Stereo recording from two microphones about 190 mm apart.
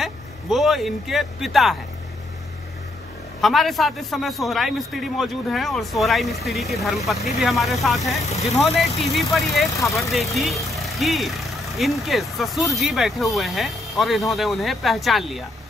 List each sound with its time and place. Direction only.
0.0 s speech: centre (ahead or behind)
3.3 s speech: centre (ahead or behind)
9.8 s speech: 15° left (ahead or behind)
10.1 s speech: centre (ahead or behind)